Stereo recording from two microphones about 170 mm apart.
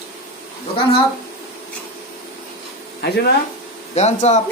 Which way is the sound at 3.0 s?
75° left (ahead or behind).